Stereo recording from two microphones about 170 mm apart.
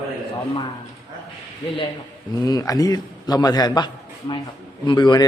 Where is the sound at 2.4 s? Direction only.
20° left (ahead or behind).